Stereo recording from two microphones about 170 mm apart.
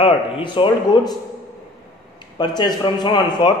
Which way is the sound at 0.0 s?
30° left (ahead or behind).